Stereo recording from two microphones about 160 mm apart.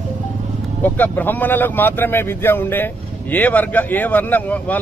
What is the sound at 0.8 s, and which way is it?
Speech, 10° left (ahead or behind).